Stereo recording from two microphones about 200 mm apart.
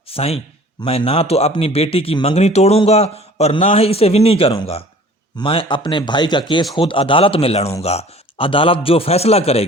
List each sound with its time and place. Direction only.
0.1 s speech: 30° left (ahead or behind)